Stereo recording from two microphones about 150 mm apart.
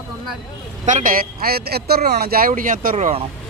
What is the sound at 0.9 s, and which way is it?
A man's voice, 60° right (ahead or behind).